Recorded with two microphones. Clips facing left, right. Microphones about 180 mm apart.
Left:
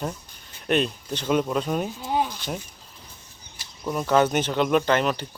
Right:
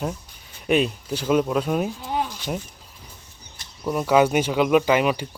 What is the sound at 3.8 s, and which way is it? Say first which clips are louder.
Speech: right 2 dB; 5° right (ahead or behind).